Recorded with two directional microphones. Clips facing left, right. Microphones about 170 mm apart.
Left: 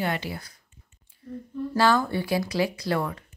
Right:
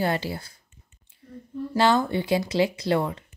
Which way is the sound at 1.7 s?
20° right (ahead or behind).